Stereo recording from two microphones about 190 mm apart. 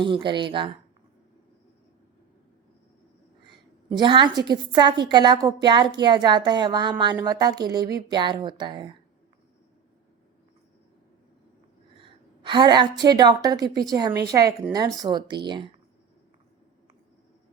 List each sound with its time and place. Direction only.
0.0 s a woman's voice: 25° right (ahead or behind)
3.9 s a woman's voice: 25° right (ahead or behind)
11.9 s a woman's voice: 25° right (ahead or behind)